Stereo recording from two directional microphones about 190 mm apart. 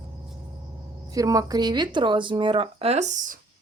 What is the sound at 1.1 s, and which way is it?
Speech, 20° right (ahead or behind).